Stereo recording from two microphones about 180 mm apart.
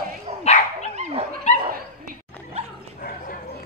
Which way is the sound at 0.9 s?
40° right (ahead or behind).